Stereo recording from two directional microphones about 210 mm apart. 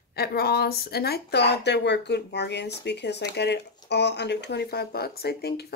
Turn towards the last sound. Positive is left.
turn(degrees=50)  # may be behind; listen again after turning